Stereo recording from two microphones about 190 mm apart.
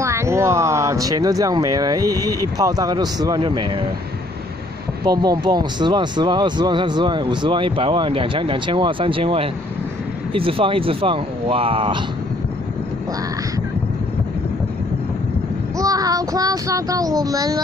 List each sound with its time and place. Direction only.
0.0 s speech: 15° right (ahead or behind)
5.0 s speech: 20° right (ahead or behind)
15.8 s speech: 20° right (ahead or behind)